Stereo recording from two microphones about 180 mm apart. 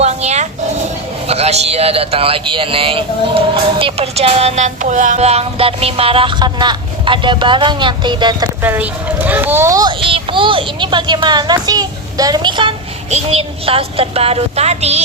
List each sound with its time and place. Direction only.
0.0 s a sound: 35° right (ahead or behind)
1.3 s a man's voice: 35° right (ahead or behind)
8.6 s a child's voice: 10° right (ahead or behind); by 15.0 s 35° right (ahead or behind)